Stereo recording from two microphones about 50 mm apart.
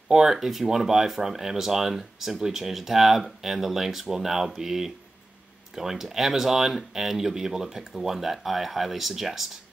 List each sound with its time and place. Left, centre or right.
0.1 s speech: centre